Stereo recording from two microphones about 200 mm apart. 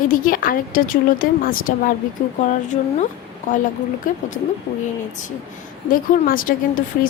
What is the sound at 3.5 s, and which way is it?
Speech, 40° left (ahead or behind).